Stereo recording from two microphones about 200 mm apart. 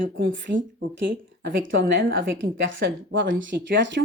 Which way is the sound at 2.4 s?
65° right (ahead or behind).